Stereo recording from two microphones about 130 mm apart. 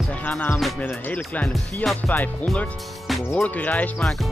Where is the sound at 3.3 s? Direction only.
10° left (ahead or behind).